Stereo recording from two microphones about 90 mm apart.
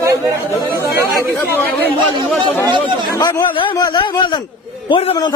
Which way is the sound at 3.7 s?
45° left (ahead or behind).